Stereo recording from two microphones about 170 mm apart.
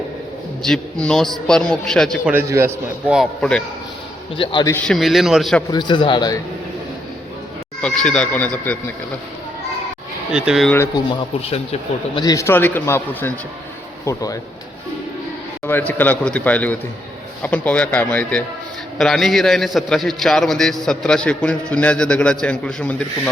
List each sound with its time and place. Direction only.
0.6 s a man's voice: 5° left (ahead or behind)
2.3 s a man's voice: 15° right (ahead or behind)
3.2 s a man's voice: 5° left (ahead or behind)
4.4 s a man's voice: 25° left (ahead or behind)
4.7 s a man's voice: 5° left (ahead or behind)
5.7 s a man's voice: 25° left (ahead or behind)
7.8 s speech: 5° left (ahead or behind)
10.3 s a man's voice: 5° right (ahead or behind)
10.9 s speech: 30° left (ahead or behind)
12.2 s a man's voice: 20° left (ahead or behind)
15.6 s a man's voice: 10° left (ahead or behind)